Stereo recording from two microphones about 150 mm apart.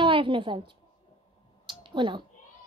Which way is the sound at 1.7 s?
30° right (ahead or behind).